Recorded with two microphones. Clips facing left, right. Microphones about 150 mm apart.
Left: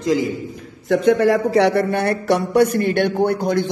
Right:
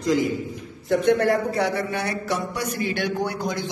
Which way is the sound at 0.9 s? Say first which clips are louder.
Left 4 dB; 85° left.